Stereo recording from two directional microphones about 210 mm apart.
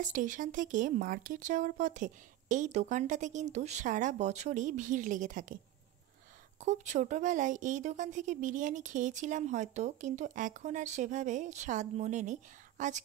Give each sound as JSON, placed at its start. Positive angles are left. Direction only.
{"t": 0.0, "sound": "a woman's voice", "side_deg": -40}
{"t": 6.6, "sound": "a woman's voice", "side_deg": -35}